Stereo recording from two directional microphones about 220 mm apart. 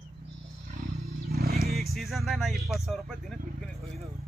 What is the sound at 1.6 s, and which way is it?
Speech, centre (ahead or behind).